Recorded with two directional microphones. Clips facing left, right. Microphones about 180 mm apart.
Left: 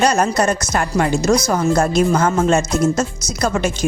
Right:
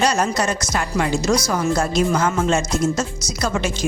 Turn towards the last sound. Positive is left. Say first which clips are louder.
# left 3 dB
turn(degrees=50)  # may be behind; listen again after turning